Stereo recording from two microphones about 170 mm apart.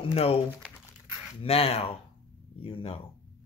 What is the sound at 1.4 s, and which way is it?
Speech, 35° left (ahead or behind).